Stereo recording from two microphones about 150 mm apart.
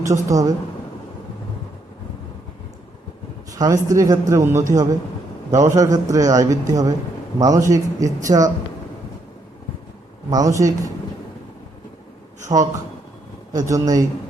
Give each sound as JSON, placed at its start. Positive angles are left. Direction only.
{"t": 0.0, "sound": "a man's voice", "side_deg": -20}
{"t": 3.5, "sound": "a man's voice", "side_deg": -20}
{"t": 10.2, "sound": "a man's voice", "side_deg": -25}
{"t": 12.5, "sound": "a man's voice", "side_deg": -35}